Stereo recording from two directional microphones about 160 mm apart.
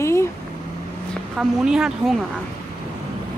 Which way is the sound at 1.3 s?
5° right (ahead or behind).